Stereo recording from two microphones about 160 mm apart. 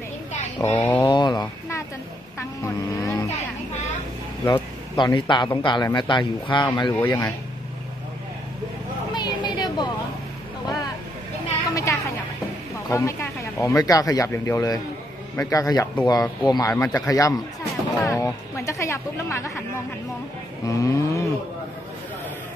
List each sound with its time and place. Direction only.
0.6 s speech: 10° left (ahead or behind)
1.0 s speech: 25° left (ahead or behind)
4.5 s speech: 25° left (ahead or behind)
7.0 s speech: 10° left (ahead or behind)
9.1 s a sound: 25° left (ahead or behind)
11.7 s a sound: 20° left (ahead or behind)
12.9 s speech: 20° left (ahead or behind)
20.6 s speech: 20° left (ahead or behind)